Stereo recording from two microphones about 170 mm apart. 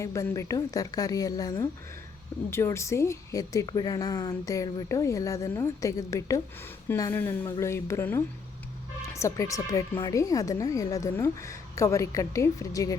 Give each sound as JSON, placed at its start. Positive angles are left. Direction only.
{"t": 0.0, "sound": "a woman's voice", "side_deg": 20}